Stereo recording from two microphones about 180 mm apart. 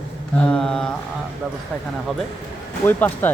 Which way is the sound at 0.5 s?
5° left (ahead or behind).